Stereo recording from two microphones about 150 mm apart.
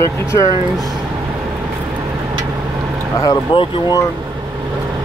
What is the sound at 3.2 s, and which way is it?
Speech, 30° left (ahead or behind).